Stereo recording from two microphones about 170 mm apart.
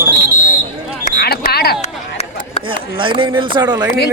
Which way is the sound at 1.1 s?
65° left (ahead or behind).